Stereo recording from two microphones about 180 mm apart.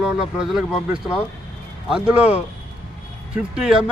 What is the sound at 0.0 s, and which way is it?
Speech, 5° right (ahead or behind).